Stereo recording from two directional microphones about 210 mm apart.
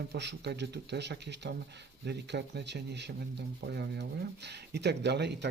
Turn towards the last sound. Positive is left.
turn(degrees=-55)  # may be behind; listen again after turning